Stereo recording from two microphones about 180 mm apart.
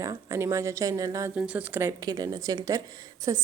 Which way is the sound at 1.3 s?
5° right (ahead or behind).